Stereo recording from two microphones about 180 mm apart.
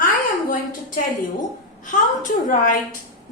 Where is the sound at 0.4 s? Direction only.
50° left (ahead or behind).